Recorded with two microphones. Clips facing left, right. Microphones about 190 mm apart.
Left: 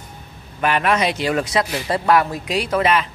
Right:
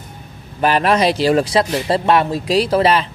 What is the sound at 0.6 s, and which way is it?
Speech, 35° right (ahead or behind).